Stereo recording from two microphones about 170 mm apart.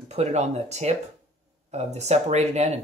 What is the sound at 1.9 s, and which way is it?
Speech, 40° right (ahead or behind).